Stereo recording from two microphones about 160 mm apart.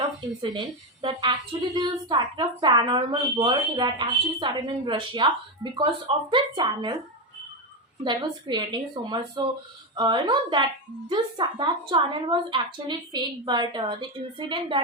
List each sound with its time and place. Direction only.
1.0 s a woman's voice: 30° right (ahead or behind)
8.0 s a woman's voice: 30° right (ahead or behind)